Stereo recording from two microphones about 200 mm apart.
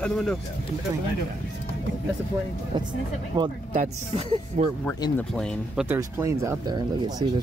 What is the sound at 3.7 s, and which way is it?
Speech, 30° right (ahead or behind).